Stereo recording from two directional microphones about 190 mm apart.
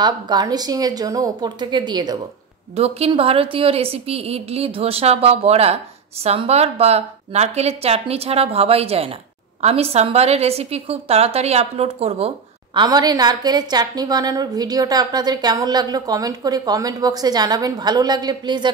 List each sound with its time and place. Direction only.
0.0 s a woman's voice: 20° right (ahead or behind)
12.7 s a woman's voice: 20° right (ahead or behind)